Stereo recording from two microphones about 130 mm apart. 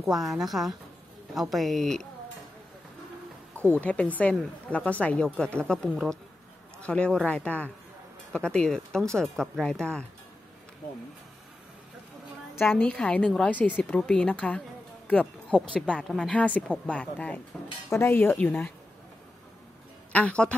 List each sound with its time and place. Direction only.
0.1 s speech: 5° right (ahead or behind)
3.7 s speech: 10° left (ahead or behind)
12.5 s speech: 15° left (ahead or behind)
17.8 s speech: 20° left (ahead or behind)
20.1 s speech: 10° left (ahead or behind)